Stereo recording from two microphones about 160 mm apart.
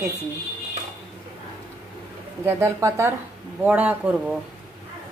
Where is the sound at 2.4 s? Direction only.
15° right (ahead or behind).